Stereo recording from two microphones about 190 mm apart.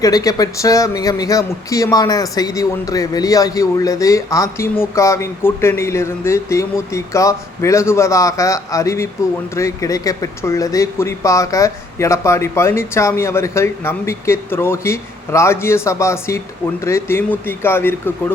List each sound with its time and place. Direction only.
0.0 s speech: 20° left (ahead or behind)